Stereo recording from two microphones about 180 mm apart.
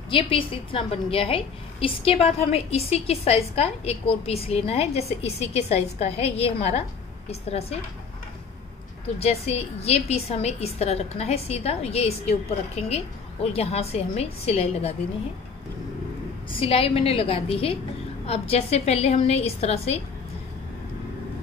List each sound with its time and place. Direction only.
0.1 s a woman's voice: 30° left (ahead or behind)
9.2 s a woman's voice: 35° left (ahead or behind)
16.4 s a woman's voice: 30° left (ahead or behind)